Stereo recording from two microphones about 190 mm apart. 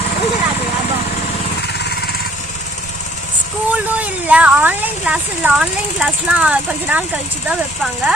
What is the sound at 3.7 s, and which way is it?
Speech, 5° right (ahead or behind).